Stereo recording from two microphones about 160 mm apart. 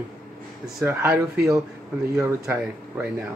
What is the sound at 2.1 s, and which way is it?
Speech, 20° right (ahead or behind).